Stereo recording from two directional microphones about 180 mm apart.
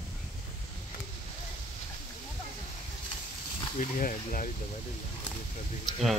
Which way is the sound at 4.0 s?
50° left (ahead or behind).